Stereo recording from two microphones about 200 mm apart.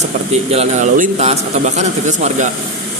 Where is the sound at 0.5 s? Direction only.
35° right (ahead or behind).